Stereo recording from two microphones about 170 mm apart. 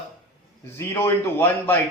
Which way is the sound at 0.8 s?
15° left (ahead or behind).